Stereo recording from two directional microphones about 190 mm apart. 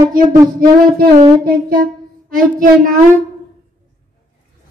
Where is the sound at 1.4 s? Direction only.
50° right (ahead or behind).